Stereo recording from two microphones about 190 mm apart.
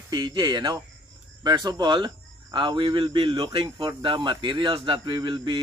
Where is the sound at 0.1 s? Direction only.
20° right (ahead or behind).